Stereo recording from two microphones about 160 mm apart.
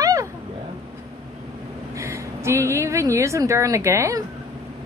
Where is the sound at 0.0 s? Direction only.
20° right (ahead or behind).